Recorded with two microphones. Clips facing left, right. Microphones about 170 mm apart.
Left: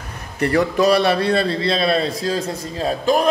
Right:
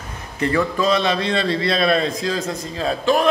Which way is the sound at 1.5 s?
30° left (ahead or behind).